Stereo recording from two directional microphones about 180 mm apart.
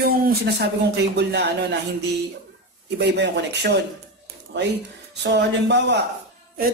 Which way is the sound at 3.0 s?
70° right (ahead or behind).